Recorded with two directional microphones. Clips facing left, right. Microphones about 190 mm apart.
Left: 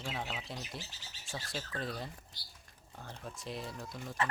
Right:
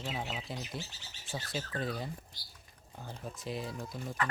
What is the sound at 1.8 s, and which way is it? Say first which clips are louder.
Speech: right 3 dB; centre (ahead or behind).